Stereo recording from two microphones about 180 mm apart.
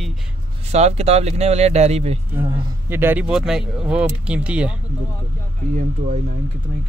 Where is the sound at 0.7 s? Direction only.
35° right (ahead or behind).